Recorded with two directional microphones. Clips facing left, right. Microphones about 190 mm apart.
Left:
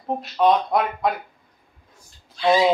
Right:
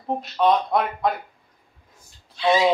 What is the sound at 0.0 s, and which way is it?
Speech, centre (ahead or behind).